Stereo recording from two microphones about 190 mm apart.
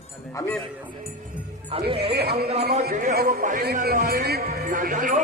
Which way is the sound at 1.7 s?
30° right (ahead or behind).